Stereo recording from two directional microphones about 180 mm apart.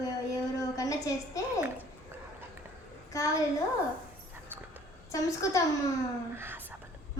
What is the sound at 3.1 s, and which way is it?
Speech, 15° left (ahead or behind).